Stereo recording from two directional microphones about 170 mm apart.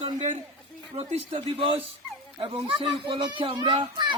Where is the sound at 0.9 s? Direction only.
30° right (ahead or behind).